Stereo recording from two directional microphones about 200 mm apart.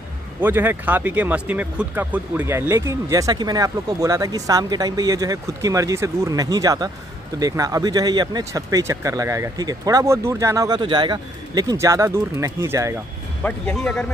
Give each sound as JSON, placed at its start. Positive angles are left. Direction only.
{"t": 0.4, "sound": "speech", "side_deg": -10}
{"t": 13.4, "sound": "speech", "side_deg": 5}